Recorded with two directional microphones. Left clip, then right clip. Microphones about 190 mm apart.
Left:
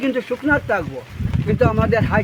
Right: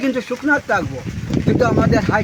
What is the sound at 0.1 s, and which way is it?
Speech, centre (ahead or behind).